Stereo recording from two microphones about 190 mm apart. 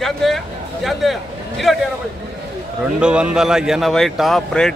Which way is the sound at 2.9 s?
5° right (ahead or behind).